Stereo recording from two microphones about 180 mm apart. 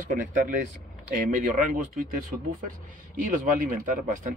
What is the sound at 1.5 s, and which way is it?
Speech, 45° right (ahead or behind).